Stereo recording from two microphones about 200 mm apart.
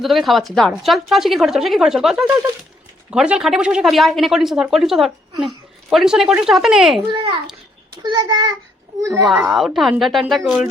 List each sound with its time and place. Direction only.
0.0 s a woman's voice: centre (ahead or behind)
8.0 s a child's voice: 20° right (ahead or behind)
9.2 s a woman's voice: centre (ahead or behind)